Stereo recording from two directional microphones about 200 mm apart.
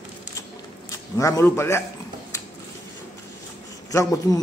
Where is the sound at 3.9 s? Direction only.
15° left (ahead or behind).